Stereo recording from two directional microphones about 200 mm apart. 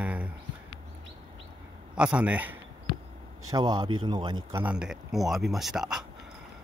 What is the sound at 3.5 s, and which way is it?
Speech, 20° right (ahead or behind).